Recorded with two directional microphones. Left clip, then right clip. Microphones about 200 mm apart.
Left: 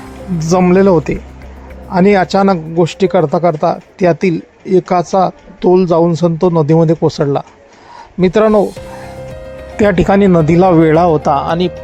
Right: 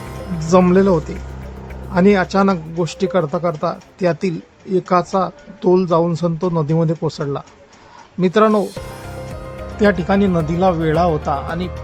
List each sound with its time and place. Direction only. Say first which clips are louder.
0.7 s speech: left 5 dB; 30° left (ahead or behind)
9.7 s speech: left 6 dB; 35° left (ahead or behind)